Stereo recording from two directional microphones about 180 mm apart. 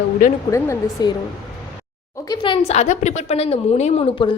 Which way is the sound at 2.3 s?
30° left (ahead or behind).